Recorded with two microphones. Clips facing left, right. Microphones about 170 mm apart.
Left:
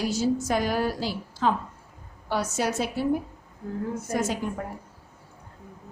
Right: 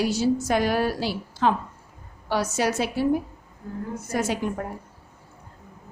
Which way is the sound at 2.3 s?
80° right.